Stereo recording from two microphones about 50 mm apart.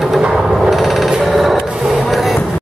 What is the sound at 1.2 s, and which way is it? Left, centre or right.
Rub, centre.